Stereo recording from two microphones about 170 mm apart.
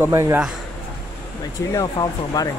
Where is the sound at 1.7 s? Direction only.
20° left (ahead or behind).